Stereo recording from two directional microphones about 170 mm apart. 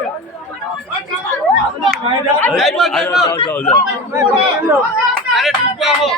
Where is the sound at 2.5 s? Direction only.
Centre (ahead or behind).